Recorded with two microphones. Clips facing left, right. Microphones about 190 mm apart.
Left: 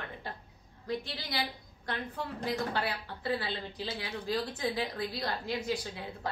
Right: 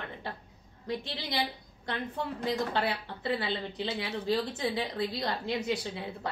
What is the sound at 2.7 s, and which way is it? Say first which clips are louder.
Speech: right 3 dB; 25° right (ahead or behind).